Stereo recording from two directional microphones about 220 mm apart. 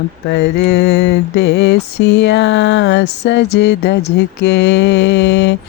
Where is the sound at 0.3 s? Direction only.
50° left (ahead or behind).